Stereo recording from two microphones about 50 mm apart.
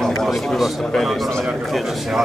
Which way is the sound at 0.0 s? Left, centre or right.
Centre.